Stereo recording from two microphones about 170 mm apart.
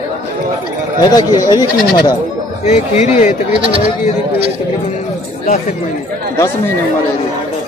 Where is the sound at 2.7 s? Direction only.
45° left (ahead or behind).